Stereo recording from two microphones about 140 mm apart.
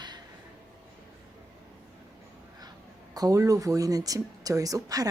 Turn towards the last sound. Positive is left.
turn(degrees=-25)  # may be behind; listen again after turning